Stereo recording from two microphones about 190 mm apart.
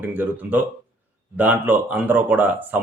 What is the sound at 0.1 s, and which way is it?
Speech, 10° right (ahead or behind).